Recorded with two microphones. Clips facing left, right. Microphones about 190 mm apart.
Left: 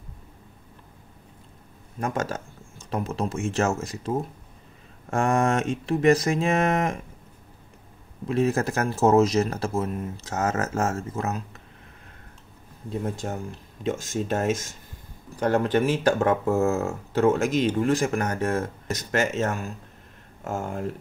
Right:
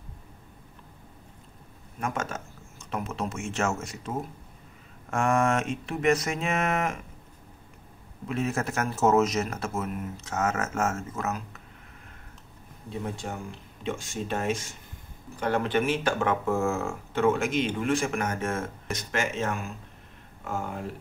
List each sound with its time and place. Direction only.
2.0 s speech: 35° left (ahead or behind)
5.1 s speech: 35° left (ahead or behind)
8.3 s speech: 35° left (ahead or behind)
13.8 s speech: 40° left (ahead or behind)